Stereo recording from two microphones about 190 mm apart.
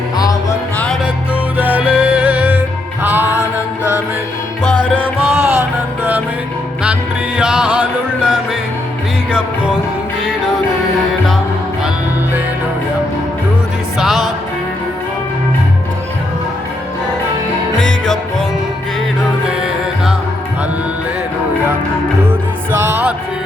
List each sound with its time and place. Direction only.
0.8 s music: 5° left (ahead or behind)
1.5 s music: 10° right (ahead or behind)
5.2 s music: 35° right (ahead or behind)
6.0 s music: 10° right (ahead or behind)
7.3 s music: 5° right (ahead or behind)
14.0 s music: centre (ahead or behind)
17.7 s music: 5° left (ahead or behind)
19.5 s music: 5° right (ahead or behind)
22.3 s music: 10° right (ahead or behind)